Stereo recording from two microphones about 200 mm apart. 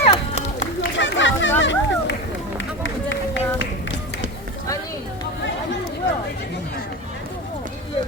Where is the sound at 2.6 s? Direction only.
65° left (ahead or behind).